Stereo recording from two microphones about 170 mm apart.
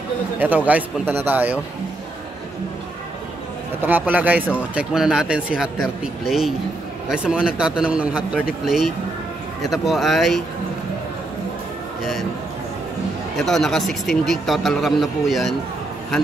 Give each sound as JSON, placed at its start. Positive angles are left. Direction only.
{"t": 0.4, "sound": "a man's voice", "side_deg": -10}
{"t": 3.8, "sound": "a man's voice", "side_deg": -10}
{"t": 9.6, "sound": "speech", "side_deg": 0}
{"t": 12.0, "sound": "a man's voice", "side_deg": 0}
{"t": 13.4, "sound": "speech", "side_deg": 0}